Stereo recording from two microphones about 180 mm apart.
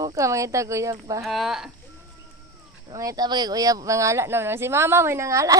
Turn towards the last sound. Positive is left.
turn(degrees=-15)  # may be behind; listen again after turning